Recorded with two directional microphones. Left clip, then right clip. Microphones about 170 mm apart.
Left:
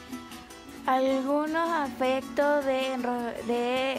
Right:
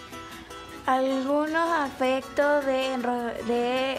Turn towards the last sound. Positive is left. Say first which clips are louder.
# right 2 dB
turn(degrees=25)  # may be behind; listen again after turning